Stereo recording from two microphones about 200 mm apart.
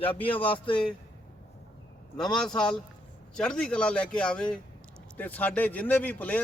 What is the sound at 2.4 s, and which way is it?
A man's voice, 5° left (ahead or behind).